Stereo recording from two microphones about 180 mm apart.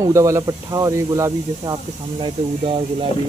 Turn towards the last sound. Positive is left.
turn(degrees=-30)  # may be behind; listen again after turning